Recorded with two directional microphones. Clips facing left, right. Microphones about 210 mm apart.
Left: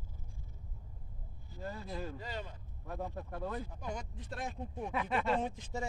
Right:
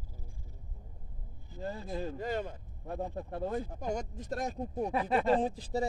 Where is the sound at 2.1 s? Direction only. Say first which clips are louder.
Right 9 dB; 50° right (ahead or behind).